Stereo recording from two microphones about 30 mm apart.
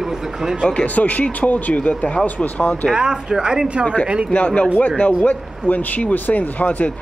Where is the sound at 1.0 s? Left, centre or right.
Left.